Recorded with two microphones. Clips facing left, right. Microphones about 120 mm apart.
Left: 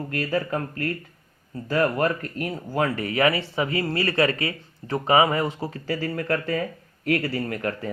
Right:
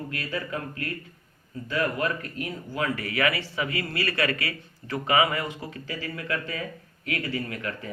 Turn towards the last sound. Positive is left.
turn(degrees=40)  # may be behind; listen again after turning